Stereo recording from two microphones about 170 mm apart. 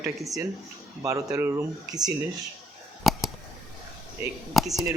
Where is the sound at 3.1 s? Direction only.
Centre (ahead or behind).